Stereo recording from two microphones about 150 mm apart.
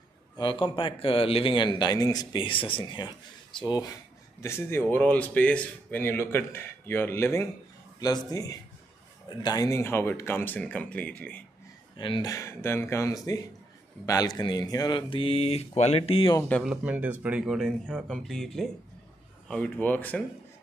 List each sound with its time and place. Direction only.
0.4 s speech: 35° left (ahead or behind)
4.4 s speech: 15° left (ahead or behind)
12.0 s speech: 35° left (ahead or behind)
12.3 s speech: 20° left (ahead or behind); by 16.3 s 35° left (ahead or behind)
16.3 s speech: 10° left (ahead or behind)
16.7 s speech: 10° right (ahead or behind); by 20.2 s 10° left (ahead or behind)